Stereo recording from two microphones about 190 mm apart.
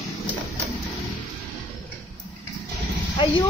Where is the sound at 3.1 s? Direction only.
25° left (ahead or behind).